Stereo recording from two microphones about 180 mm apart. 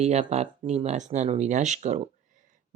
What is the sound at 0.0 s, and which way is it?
Speech, 35° right (ahead or behind).